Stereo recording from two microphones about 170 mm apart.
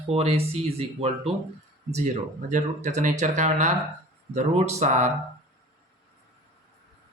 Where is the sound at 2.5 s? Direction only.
45° right (ahead or behind).